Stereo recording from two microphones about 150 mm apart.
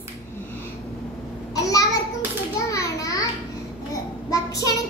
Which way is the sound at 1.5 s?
25° left (ahead or behind).